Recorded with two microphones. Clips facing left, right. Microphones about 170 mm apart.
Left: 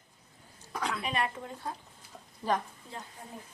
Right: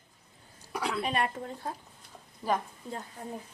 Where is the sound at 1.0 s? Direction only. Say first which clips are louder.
Right 3 dB; 40° right (ahead or behind).